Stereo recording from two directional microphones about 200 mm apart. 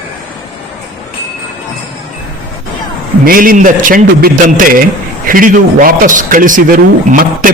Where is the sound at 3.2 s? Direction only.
45° right (ahead or behind).